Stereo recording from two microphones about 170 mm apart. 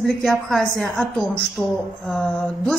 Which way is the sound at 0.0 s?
5° left (ahead or behind).